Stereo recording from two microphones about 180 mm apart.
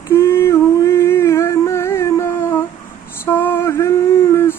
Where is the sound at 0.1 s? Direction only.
15° left (ahead or behind).